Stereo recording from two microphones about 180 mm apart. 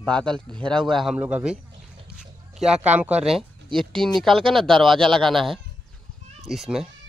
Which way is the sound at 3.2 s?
Centre (ahead or behind).